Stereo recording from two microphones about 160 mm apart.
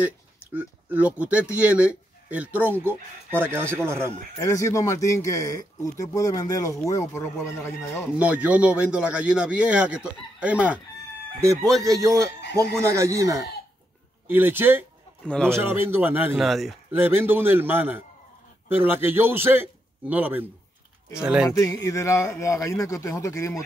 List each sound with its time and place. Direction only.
0.0 s a man's voice: 10° right (ahead or behind)
4.4 s speech: 20° left (ahead or behind)
8.2 s a man's voice: 10° right (ahead or behind)
11.8 s a man's voice: 20° right (ahead or behind)
15.2 s speech: 5° left (ahead or behind)
15.5 s a man's voice: 15° right (ahead or behind)
16.4 s speech: centre (ahead or behind)
16.9 s a man's voice: 15° right (ahead or behind)
21.5 s speech: 20° left (ahead or behind)